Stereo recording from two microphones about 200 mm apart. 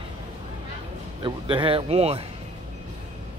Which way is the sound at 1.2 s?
25° right (ahead or behind).